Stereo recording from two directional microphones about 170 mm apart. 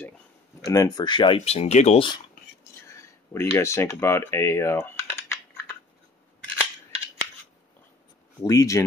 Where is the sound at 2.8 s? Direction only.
15° left (ahead or behind).